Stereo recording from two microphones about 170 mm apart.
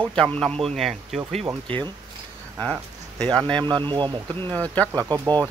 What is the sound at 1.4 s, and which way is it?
Speech, 30° right (ahead or behind).